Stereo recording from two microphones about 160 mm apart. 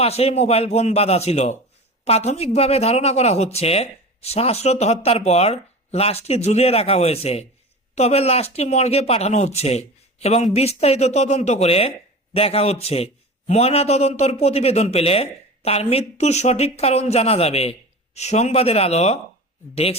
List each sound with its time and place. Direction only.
0.0 s a man's voice: 40° left (ahead or behind)